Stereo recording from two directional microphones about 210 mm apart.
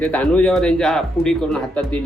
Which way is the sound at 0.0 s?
5° left (ahead or behind).